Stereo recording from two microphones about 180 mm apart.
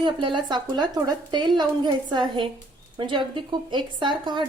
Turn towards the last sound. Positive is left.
turn(degrees=-25)  # may be behind; listen again after turning